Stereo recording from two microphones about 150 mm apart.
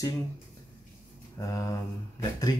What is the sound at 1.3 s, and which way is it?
Speech, 20° left (ahead or behind).